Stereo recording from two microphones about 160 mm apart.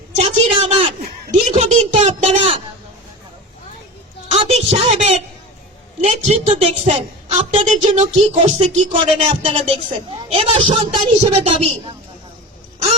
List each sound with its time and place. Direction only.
0.3 s a woman's voice: 35° right (ahead or behind)
4.3 s a sound: 40° right (ahead or behind)
6.0 s a woman's voice: 45° right (ahead or behind)